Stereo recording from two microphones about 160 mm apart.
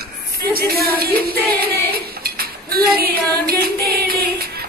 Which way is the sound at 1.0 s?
75° right (ahead or behind).